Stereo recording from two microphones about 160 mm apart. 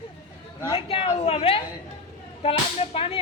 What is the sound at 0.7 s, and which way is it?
Speech, 35° left (ahead or behind).